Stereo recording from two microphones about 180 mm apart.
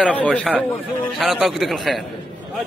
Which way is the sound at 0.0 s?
5° left (ahead or behind).